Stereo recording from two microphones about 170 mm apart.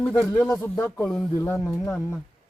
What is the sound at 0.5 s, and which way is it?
Speech, 10° left (ahead or behind).